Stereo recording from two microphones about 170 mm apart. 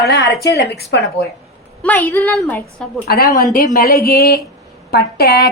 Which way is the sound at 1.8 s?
10° left (ahead or behind).